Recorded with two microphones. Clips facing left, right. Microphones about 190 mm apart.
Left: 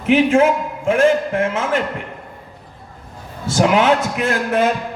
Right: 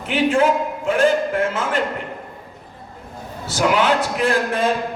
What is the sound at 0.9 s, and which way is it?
Speech, 35° right (ahead or behind).